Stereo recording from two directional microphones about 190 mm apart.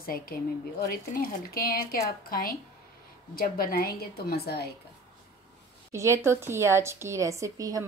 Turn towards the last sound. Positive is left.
turn(degrees=-20)  # may be behind; listen again after turning